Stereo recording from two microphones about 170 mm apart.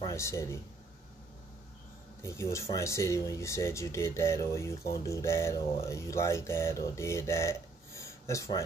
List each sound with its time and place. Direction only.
0.0 s speech: 15° left (ahead or behind)
2.2 s speech: 15° left (ahead or behind)